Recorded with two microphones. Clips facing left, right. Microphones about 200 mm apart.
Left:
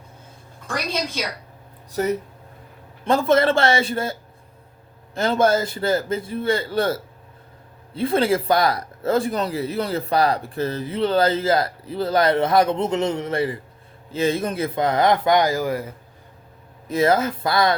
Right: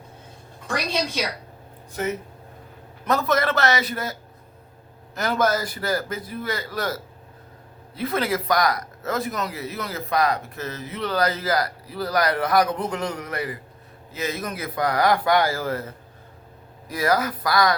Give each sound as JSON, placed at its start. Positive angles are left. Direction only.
{"t": 1.9, "sound": "speech", "side_deg": 35}
{"t": 16.9, "sound": "speech", "side_deg": 25}